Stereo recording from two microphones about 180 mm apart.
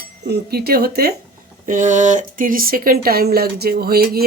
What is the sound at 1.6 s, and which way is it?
Speech, 45° right (ahead or behind).